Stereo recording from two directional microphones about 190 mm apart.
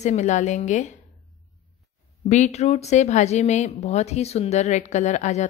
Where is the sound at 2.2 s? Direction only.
40° left (ahead or behind).